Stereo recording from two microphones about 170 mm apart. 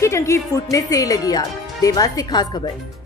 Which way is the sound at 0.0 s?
15° left (ahead or behind).